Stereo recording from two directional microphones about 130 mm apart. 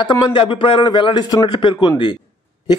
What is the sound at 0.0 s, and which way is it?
Speech, 40° left (ahead or behind).